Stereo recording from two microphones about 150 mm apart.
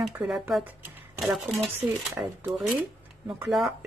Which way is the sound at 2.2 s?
15° right (ahead or behind).